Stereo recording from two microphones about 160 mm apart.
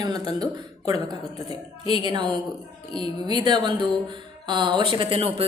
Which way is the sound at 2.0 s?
30° right (ahead or behind).